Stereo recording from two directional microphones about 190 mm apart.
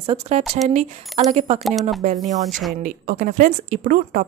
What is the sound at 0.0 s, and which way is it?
A woman's voice, 30° right (ahead or behind).